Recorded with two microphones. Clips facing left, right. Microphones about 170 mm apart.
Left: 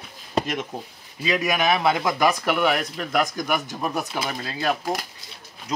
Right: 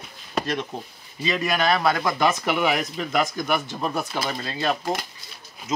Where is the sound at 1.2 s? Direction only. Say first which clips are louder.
Left 1 dB; 10° left (ahead or behind).